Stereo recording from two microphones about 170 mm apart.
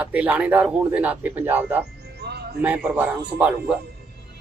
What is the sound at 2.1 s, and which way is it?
Music, 75° right (ahead or behind).